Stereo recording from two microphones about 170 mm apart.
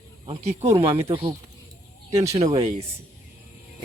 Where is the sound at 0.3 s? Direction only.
35° right (ahead or behind).